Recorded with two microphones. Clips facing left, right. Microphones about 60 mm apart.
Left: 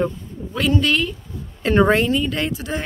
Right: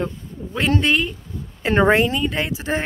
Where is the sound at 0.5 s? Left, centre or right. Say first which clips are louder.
Even; right; by 2.6 s centre.